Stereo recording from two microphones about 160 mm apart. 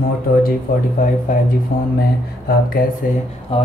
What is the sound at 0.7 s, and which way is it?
Speech, 65° left (ahead or behind).